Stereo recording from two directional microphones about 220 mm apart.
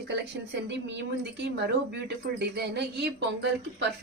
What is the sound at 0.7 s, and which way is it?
Speech, 50° right (ahead or behind).